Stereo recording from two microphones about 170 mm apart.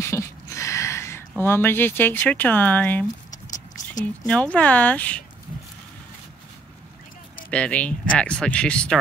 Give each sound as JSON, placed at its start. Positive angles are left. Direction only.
{"t": 0.0, "sound": "a sound", "side_deg": 15}
{"t": 1.4, "sound": "speech", "side_deg": 15}
{"t": 4.3, "sound": "speech", "side_deg": 5}
{"t": 7.5, "sound": "speech", "side_deg": 5}